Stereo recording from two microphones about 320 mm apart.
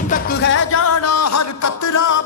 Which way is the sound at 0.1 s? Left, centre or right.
Left.